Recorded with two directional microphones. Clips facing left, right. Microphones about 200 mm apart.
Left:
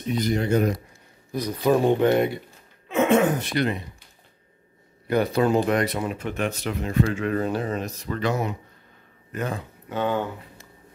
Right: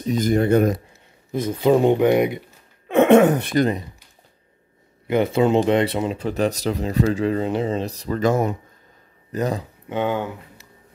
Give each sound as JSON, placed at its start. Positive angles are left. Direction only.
{"t": 0.0, "sound": "speech", "side_deg": -45}
{"t": 1.3, "sound": "speech", "side_deg": -25}
{"t": 2.9, "sound": "speech", "side_deg": -65}
{"t": 3.5, "sound": "speech", "side_deg": -40}
{"t": 5.0, "sound": "speech", "side_deg": -20}
{"t": 7.3, "sound": "speech", "side_deg": -20}
{"t": 9.3, "sound": "speech", "side_deg": -35}
{"t": 9.8, "sound": "speech", "side_deg": -15}